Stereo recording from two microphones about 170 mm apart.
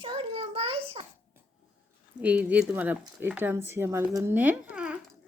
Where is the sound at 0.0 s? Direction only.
30° right (ahead or behind).